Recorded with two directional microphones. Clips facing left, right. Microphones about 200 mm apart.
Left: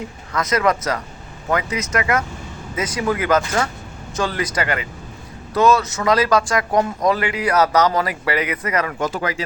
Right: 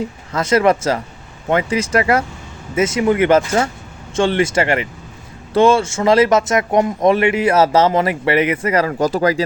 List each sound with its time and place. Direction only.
0.3 s speech: 30° right (ahead or behind)